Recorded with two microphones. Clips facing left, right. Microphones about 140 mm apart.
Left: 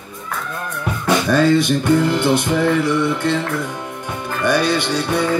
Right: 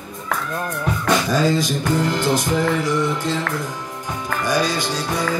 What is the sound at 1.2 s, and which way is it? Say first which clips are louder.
Music: left 4 dB; 65° left (ahead or behind).